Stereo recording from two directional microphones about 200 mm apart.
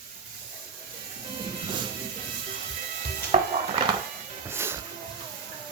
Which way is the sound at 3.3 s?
35° right (ahead or behind).